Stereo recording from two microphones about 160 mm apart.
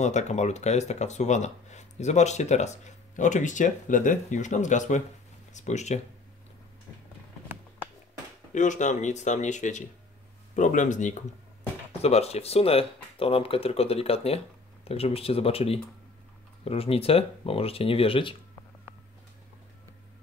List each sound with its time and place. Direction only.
0.0 s speech: 45° left (ahead or behind)
8.5 s speech: 50° left (ahead or behind)
12.0 s speech: 40° left (ahead or behind)